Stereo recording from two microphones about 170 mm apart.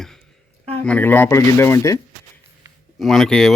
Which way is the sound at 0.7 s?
10° left (ahead or behind).